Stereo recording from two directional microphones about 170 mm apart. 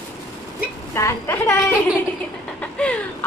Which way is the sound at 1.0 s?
15° left (ahead or behind).